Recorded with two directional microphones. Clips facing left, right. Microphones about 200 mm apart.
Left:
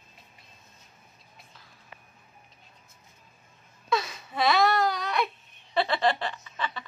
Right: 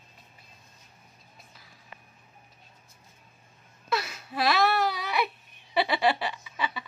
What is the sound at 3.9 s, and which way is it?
Wail, 5° right (ahead or behind).